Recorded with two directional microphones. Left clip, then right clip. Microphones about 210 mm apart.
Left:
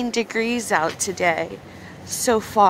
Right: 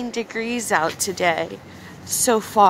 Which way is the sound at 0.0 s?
25° left (ahead or behind).